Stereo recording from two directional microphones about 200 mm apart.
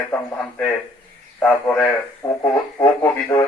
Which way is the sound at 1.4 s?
5° left (ahead or behind).